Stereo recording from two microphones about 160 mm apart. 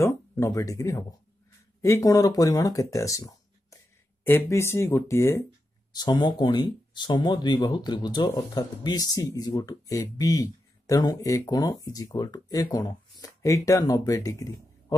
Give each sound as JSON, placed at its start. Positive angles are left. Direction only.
{"t": 0.0, "sound": "speech", "side_deg": 20}
{"t": 5.9, "sound": "speech", "side_deg": 25}